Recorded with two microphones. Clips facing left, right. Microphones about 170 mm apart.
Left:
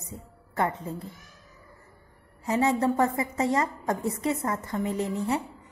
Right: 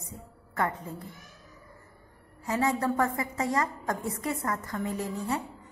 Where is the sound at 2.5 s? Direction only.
25° left (ahead or behind).